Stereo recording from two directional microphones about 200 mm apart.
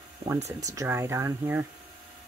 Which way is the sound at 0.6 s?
15° right (ahead or behind).